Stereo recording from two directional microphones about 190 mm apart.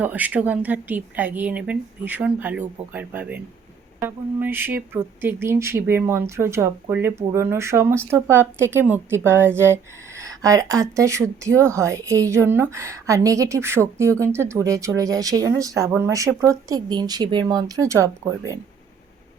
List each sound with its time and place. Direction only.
0.0 s speech: 10° right (ahead or behind)